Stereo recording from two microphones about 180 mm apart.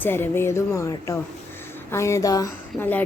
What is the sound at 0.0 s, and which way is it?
A woman's voice, 10° left (ahead or behind).